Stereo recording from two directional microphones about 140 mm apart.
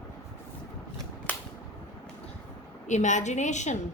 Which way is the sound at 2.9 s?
60° left (ahead or behind).